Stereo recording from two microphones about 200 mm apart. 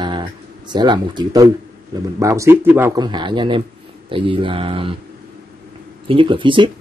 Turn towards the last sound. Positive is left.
turn(degrees=-25)  # may be behind; listen again after turning